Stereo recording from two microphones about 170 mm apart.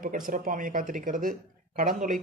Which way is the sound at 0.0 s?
55° right (ahead or behind).